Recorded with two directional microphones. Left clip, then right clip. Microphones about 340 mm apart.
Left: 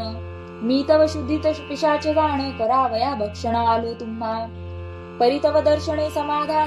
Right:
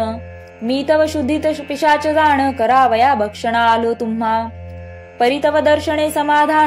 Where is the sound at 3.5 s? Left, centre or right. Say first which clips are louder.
Right 6 dB; centre.